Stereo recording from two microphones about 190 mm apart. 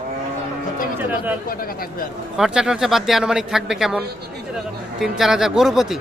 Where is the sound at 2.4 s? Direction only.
5° right (ahead or behind).